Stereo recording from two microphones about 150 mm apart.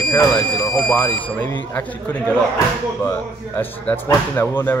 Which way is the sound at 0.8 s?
15° left (ahead or behind).